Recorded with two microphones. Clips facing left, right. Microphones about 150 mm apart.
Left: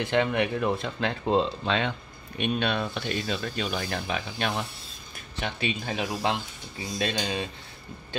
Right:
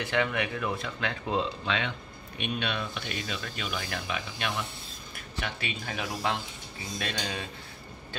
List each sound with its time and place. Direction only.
0.0 s speech: 30° left (ahead or behind)
5.3 s speech: 25° left (ahead or behind)